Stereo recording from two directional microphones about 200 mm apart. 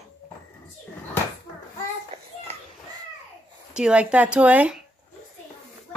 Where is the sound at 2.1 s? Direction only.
30° right (ahead or behind).